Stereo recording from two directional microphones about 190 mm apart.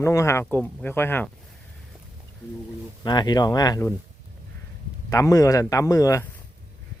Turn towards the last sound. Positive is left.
turn(degrees=15)  # may be behind; listen again after turning